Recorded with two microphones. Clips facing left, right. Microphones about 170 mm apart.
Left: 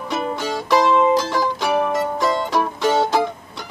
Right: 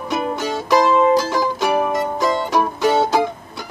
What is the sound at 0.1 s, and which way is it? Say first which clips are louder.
Music: right 2 dB; 5° right (ahead or behind).